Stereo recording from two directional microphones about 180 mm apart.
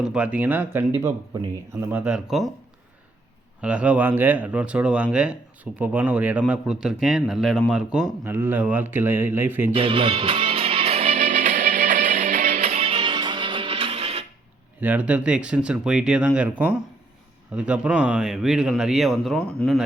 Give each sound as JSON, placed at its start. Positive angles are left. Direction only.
{"t": 0.0, "sound": "speech", "side_deg": -5}
{"t": 3.6, "sound": "speech", "side_deg": -5}
{"t": 9.7, "sound": "music", "side_deg": -30}
{"t": 14.8, "sound": "speech", "side_deg": -10}